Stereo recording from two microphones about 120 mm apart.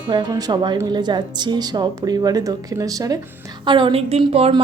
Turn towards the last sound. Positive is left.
turn(degrees=-55)  # may be behind; listen again after turning